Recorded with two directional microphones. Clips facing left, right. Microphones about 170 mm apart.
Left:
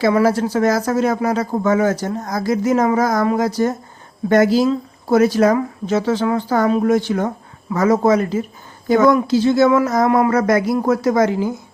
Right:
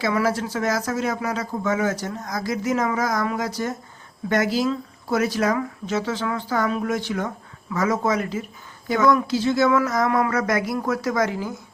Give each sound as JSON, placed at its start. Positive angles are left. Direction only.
{"t": 0.0, "sound": "speech", "side_deg": 35}